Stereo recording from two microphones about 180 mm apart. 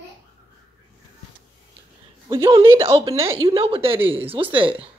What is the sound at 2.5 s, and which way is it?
A woman's voice, 30° right (ahead or behind).